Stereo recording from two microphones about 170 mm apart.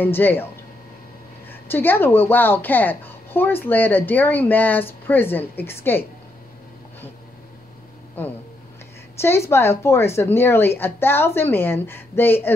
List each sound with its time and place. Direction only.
0.0 s a woman's voice: 10° left (ahead or behind)
1.5 s a woman's voice: 10° left (ahead or behind)
9.2 s a woman's voice: 15° left (ahead or behind)